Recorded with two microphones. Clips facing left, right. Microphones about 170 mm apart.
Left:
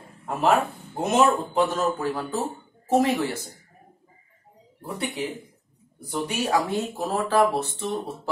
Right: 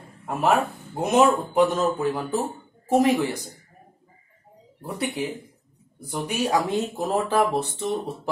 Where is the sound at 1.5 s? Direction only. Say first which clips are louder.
Right 3 dB; 20° right (ahead or behind).